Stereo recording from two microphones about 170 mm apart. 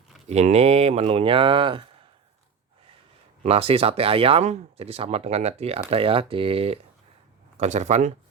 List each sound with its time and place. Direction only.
0.3 s speech: 40° right (ahead or behind)
3.4 s speech: 35° right (ahead or behind)